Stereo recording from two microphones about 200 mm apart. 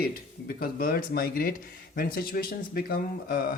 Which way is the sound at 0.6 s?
45° left (ahead or behind).